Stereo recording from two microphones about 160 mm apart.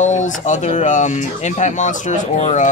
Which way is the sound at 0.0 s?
50° left (ahead or behind).